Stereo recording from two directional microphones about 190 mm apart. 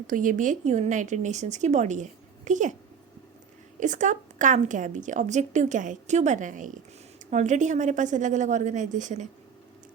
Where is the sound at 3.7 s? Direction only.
40° right (ahead or behind).